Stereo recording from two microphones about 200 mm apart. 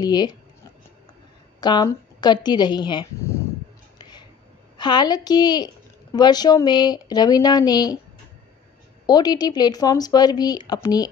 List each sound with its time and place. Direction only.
0.0 s speech: 20° left (ahead or behind)
1.6 s speech: 20° left (ahead or behind)
4.0 s a sound: 20° left (ahead or behind)
4.7 s speech: 20° left (ahead or behind)
9.0 s speech: 20° left (ahead or behind)